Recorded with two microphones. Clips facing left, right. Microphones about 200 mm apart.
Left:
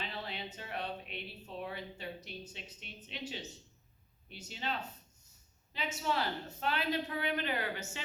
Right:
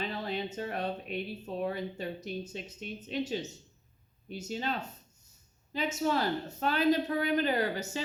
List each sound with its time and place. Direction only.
0.0 s speech: 45° right (ahead or behind)